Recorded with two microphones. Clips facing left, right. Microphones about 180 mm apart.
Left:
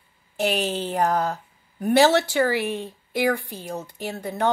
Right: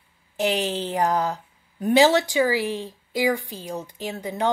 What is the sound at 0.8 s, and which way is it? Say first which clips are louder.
A woman's voice: even; 15° right (ahead or behind).